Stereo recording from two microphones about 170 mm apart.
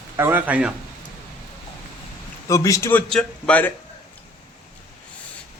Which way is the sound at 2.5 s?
20° left (ahead or behind).